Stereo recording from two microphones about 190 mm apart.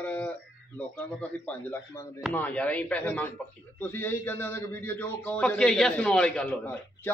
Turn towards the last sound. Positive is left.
turn(degrees=10)  # may be behind; listen again after turning